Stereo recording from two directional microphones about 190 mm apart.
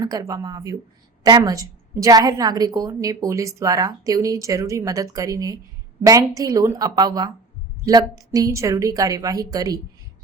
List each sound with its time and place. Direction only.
0.0 s a woman's voice: 20° right (ahead or behind)